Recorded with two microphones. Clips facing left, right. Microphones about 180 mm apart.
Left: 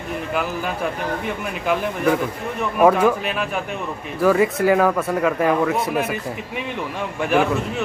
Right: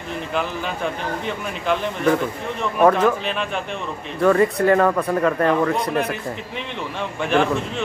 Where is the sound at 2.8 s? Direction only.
10° left (ahead or behind).